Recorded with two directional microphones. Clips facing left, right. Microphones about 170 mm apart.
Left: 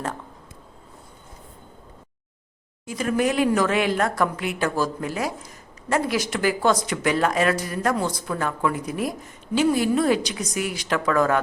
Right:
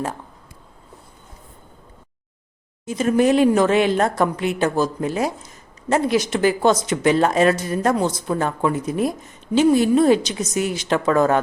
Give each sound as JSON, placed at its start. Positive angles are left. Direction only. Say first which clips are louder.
{"t": 2.8, "sound": "a woman's voice", "louder": "right 5 dB", "side_deg": -25}